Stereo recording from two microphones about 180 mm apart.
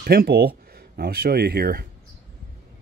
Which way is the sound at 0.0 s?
55° right (ahead or behind).